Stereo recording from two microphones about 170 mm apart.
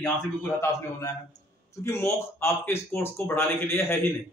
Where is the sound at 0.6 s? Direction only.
20° left (ahead or behind).